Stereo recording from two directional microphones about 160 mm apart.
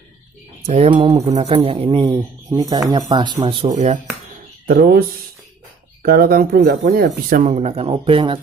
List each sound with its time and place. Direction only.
0.6 s a sound: 45° right (ahead or behind)
0.8 s speech: 35° right (ahead or behind)
2.5 s speech: 25° right (ahead or behind)
3.7 s speech: 50° right (ahead or behind)
4.6 s speech: 75° right (ahead or behind)
6.0 s speech: 65° right (ahead or behind)
7.5 s speech: 40° right (ahead or behind)